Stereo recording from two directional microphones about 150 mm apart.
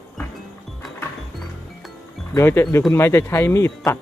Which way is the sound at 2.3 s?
15° left (ahead or behind).